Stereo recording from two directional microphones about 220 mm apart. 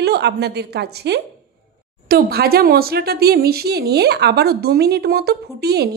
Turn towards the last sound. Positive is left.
turn(degrees=-45)  # may be behind; listen again after turning